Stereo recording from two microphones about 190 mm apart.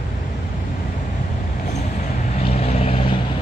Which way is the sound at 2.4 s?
35° left (ahead or behind).